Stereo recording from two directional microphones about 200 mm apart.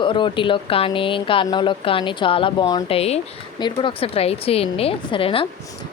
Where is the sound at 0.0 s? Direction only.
25° left (ahead or behind).